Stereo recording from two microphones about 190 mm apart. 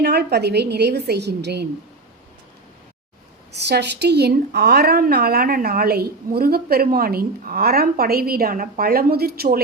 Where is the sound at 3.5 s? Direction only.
60° right (ahead or behind).